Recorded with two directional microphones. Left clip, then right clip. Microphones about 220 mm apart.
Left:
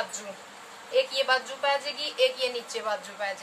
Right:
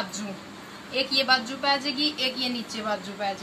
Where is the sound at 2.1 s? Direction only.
35° left (ahead or behind).